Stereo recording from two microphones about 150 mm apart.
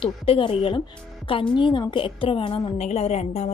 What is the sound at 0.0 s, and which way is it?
A woman's voice, 35° left (ahead or behind).